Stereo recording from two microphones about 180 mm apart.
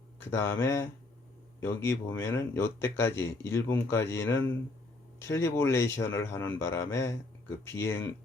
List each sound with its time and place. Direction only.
0.3 s speech: 15° left (ahead or behind)